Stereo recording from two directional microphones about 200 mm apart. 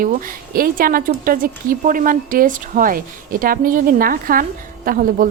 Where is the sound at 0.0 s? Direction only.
45° right (ahead or behind).